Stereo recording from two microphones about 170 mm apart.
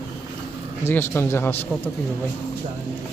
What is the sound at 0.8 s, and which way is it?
Speech, 15° left (ahead or behind).